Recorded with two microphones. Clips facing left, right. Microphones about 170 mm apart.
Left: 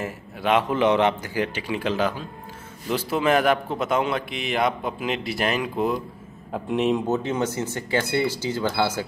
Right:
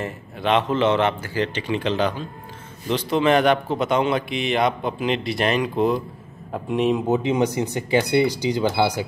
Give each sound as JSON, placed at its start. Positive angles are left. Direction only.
{"t": 0.0, "sound": "a man's voice", "side_deg": 5}
{"t": 7.1, "sound": "speech", "side_deg": -15}